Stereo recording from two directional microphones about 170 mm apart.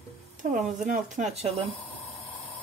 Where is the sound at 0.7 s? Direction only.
50° right (ahead or behind).